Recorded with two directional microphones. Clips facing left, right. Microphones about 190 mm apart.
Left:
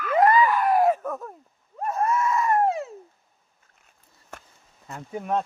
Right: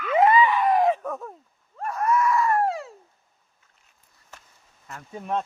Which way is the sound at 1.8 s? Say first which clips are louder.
Right 1 dB; 25° left (ahead or behind).